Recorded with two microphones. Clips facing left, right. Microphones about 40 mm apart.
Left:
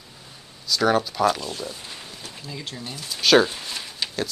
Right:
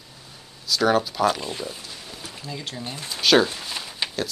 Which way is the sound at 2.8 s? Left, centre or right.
Right.